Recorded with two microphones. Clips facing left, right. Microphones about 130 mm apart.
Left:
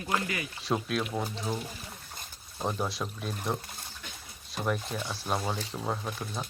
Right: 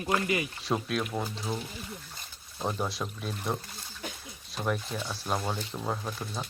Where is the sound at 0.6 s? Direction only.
Centre (ahead or behind).